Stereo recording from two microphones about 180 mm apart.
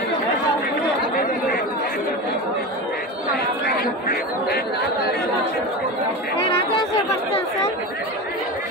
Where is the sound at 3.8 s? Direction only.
60° left (ahead or behind).